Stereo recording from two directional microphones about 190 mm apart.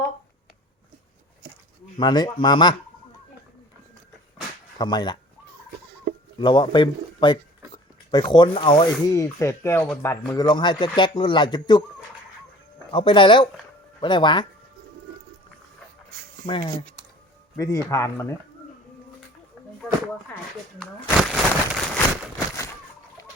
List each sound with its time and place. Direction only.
2.0 s speech: 20° left (ahead or behind)
4.8 s speech: 20° left (ahead or behind)
6.4 s speech: 25° left (ahead or behind)
12.9 s speech: 25° left (ahead or behind)
16.5 s speech: 25° left (ahead or behind)
20.7 s crumpling: centre (ahead or behind)